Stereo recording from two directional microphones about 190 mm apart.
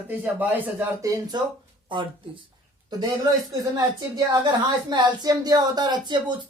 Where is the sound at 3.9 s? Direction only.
20° right (ahead or behind).